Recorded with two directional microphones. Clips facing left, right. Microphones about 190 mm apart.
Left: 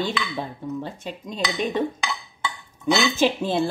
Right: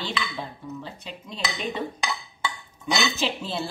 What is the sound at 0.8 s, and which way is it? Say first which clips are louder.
Speech: left 6 dB; 45° left (ahead or behind).